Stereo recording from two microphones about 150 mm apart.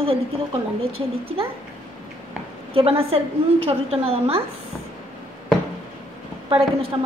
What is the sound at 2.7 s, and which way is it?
A woman's voice, 40° right (ahead or behind).